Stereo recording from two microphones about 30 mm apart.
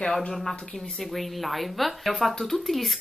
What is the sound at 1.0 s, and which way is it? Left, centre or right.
A woman's voice, centre.